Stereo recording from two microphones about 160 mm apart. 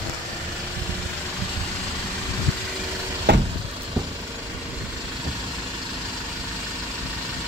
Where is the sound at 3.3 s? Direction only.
90° right.